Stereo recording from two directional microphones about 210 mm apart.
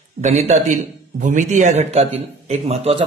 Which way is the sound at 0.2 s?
30° right (ahead or behind).